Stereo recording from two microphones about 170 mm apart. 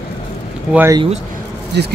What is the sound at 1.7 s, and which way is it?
Speech, 80° right.